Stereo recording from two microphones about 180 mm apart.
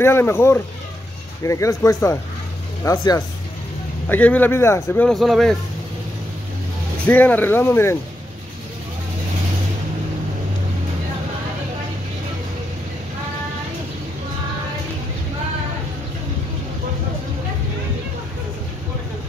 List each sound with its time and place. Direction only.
0.0 s speech: 15° left (ahead or behind)
4.1 s speech: 10° left (ahead or behind)
7.1 s speech: 10° left (ahead or behind)